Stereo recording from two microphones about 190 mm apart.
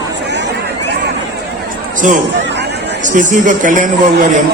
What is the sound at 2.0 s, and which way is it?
A man's voice, 40° right (ahead or behind).